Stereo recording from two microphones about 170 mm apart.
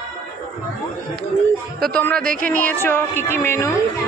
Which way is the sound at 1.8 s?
5° left (ahead or behind).